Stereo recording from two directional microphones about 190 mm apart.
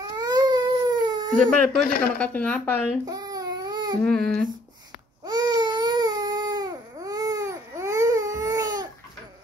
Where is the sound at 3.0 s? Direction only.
20° right (ahead or behind).